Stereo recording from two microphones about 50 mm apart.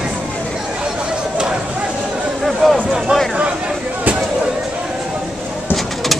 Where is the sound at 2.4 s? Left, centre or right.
Centre.